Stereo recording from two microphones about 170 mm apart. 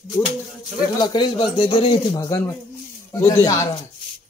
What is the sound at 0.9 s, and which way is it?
Speech, 25° left (ahead or behind).